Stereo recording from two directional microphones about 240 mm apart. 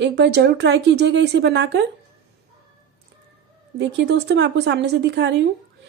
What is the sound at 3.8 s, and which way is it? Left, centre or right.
A woman's voice, right.